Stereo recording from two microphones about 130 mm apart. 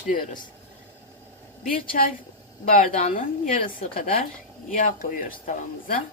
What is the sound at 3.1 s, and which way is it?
A woman's voice, 90° left.